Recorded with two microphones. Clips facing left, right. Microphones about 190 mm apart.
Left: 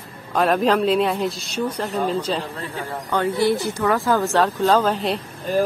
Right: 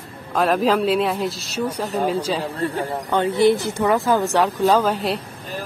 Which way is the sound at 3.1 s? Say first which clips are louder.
Right 3 dB; 20° right (ahead or behind).